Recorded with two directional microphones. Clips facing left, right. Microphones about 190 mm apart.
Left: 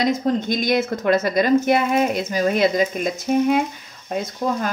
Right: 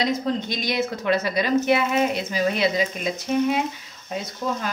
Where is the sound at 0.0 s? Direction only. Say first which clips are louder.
Left 4 dB; 50° left (ahead or behind).